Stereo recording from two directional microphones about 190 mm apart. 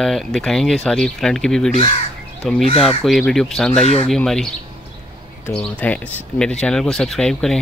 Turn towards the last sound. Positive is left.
turn(degrees=5)  # may be behind; listen again after turning